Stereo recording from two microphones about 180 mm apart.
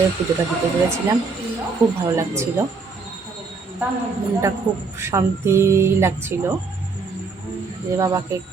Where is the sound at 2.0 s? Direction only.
15° right (ahead or behind).